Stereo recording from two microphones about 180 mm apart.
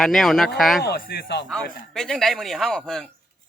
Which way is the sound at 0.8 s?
65° left (ahead or behind).